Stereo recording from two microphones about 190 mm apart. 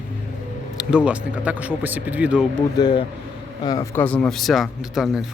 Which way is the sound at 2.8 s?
25° left (ahead or behind).